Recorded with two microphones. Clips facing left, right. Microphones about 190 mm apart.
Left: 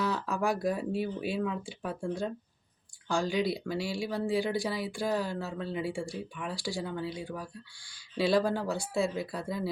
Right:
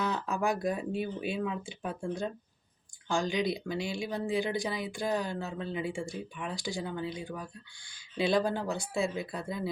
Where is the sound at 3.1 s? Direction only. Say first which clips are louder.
Left 1 dB; 20° right (ahead or behind).